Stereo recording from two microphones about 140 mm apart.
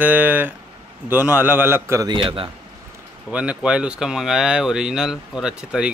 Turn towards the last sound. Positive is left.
turn(degrees=-5)  # may be behind; listen again after turning